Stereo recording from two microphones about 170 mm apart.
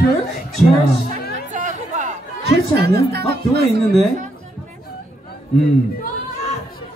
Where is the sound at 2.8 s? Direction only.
70° right (ahead or behind).